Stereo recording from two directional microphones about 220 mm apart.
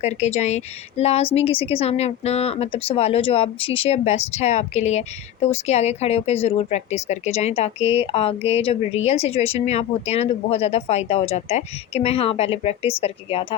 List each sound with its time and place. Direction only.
0.0 s speech: 30° left (ahead or behind)